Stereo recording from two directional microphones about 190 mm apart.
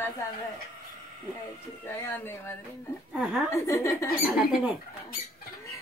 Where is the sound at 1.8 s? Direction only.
10° left (ahead or behind).